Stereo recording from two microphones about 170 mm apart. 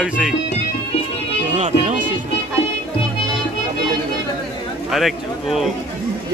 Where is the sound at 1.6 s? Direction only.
45° right (ahead or behind).